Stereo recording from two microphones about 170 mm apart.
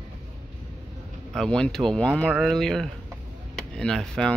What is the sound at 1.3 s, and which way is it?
Speech, 5° left (ahead or behind).